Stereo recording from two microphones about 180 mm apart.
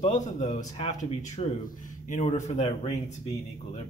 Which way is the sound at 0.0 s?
40° left (ahead or behind).